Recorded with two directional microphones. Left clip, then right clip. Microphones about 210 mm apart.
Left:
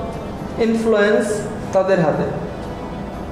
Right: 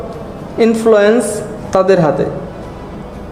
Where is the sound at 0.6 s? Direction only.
50° right (ahead or behind).